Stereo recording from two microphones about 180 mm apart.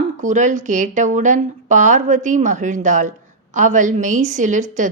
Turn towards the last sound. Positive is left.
turn(degrees=-45)  # may be behind; listen again after turning